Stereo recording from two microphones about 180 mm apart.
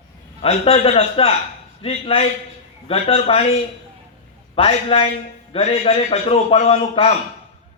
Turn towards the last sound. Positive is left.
turn(degrees=35)  # may be behind; listen again after turning